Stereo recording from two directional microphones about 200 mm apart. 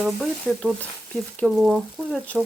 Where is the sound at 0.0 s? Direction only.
Centre (ahead or behind).